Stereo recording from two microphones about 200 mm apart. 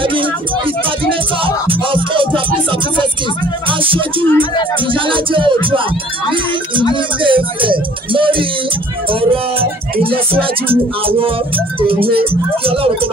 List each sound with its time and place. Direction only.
0.0 s music: 25° right (ahead or behind)
1.4 s music: 25° right (ahead or behind)
3.6 s music: 25° right (ahead or behind)
4.9 s speech: 25° right (ahead or behind)
6.3 s music: 25° right (ahead or behind)
10.0 s speech: 25° right (ahead or behind)